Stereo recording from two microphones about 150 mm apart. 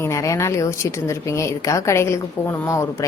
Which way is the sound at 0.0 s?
20° left (ahead or behind).